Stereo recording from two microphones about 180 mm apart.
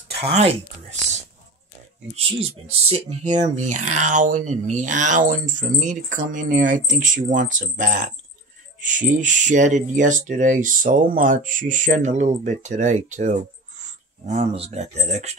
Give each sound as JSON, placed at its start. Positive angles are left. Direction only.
{"t": 0.2, "sound": "speech", "side_deg": -35}
{"t": 2.1, "sound": "speech", "side_deg": -35}